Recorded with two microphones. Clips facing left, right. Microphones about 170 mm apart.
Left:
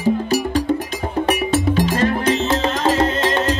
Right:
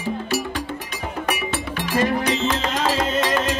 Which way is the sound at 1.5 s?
35° left (ahead or behind).